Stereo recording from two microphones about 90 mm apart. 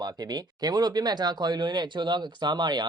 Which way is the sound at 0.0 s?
50° right (ahead or behind).